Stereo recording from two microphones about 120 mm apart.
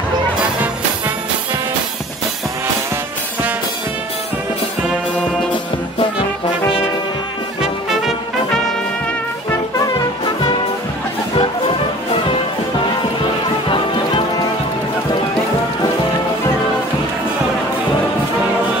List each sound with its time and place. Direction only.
7.6 s music: 5° right (ahead or behind)
11.3 s music: 50° left (ahead or behind)